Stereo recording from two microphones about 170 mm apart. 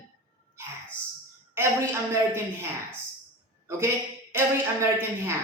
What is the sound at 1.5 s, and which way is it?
Speech, 15° right (ahead or behind).